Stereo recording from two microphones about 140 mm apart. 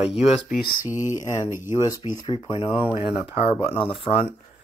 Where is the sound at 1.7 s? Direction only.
25° left (ahead or behind).